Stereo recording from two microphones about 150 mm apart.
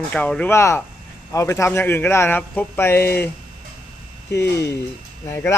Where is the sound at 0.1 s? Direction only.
10° left (ahead or behind).